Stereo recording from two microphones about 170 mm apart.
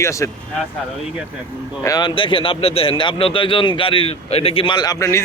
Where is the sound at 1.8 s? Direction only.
20° left (ahead or behind).